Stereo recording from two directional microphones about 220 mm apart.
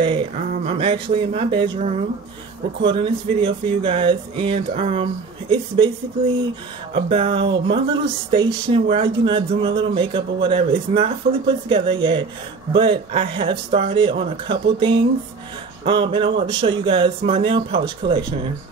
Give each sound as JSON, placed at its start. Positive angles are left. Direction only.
{"t": 0.0, "sound": "a sound", "side_deg": -25}
{"t": 0.5, "sound": "speech", "side_deg": -25}
{"t": 6.9, "sound": "speech", "side_deg": -25}